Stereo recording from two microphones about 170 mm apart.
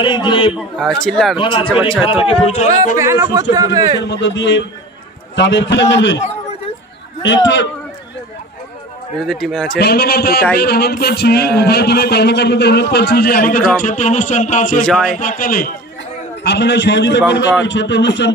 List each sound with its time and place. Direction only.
0.0 s a man's voice: 25° left (ahead or behind)
0.6 s a man's voice: centre (ahead or behind)
1.4 s a man's voice: 30° left (ahead or behind)
3.0 s a man's voice: 20° right (ahead or behind)
4.1 s a man's voice: 90° left
7.4 s a man's voice: 90° left
9.2 s a man's voice: centre (ahead or behind)
9.8 s a man's voice: 70° left (ahead or behind); by 14.8 s 45° left (ahead or behind)
14.8 s a man's voice: 5° left (ahead or behind)
15.1 s a man's voice: 50° left (ahead or behind)
16.4 s a man's voice: 85° left